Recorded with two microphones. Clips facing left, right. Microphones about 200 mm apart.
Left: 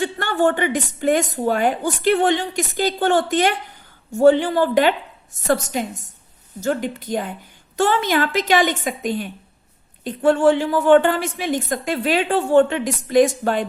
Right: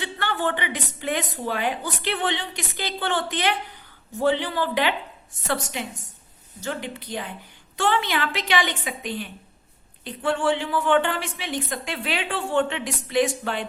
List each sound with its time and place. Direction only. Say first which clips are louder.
0.0 s a woman's voice: left 8 dB; 45° left (ahead or behind)